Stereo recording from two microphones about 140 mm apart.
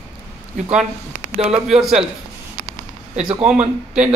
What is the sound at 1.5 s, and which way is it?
Speech, 5° right (ahead or behind).